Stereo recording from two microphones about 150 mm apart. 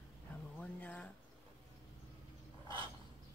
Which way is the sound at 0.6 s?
10° left (ahead or behind).